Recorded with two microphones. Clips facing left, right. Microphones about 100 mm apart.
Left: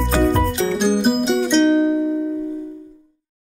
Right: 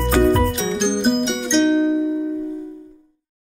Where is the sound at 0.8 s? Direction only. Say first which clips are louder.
Even; 5° left (ahead or behind).